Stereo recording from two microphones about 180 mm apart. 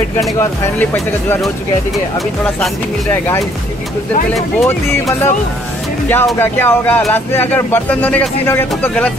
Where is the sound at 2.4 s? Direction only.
10° left (ahead or behind).